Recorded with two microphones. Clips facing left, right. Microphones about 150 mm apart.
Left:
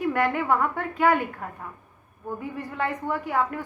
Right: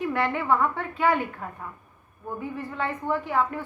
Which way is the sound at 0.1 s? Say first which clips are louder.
Left 1 dB; 45° left (ahead or behind).